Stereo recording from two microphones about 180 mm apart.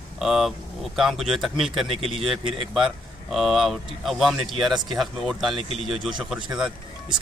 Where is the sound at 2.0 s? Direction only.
30° right (ahead or behind).